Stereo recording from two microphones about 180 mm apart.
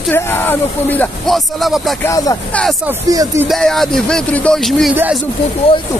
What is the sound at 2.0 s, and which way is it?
Speech, 20° left (ahead or behind).